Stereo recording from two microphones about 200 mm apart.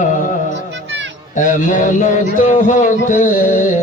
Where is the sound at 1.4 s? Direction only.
40° left (ahead or behind).